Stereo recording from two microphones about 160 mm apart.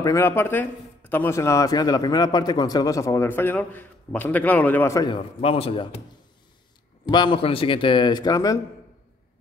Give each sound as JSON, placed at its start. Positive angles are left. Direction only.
{"t": 0.0, "sound": "speech", "side_deg": 20}
{"t": 5.1, "sound": "speech", "side_deg": 35}
{"t": 7.1, "sound": "a man's voice", "side_deg": 30}